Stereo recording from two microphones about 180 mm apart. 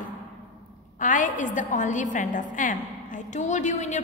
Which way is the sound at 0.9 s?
45° left (ahead or behind).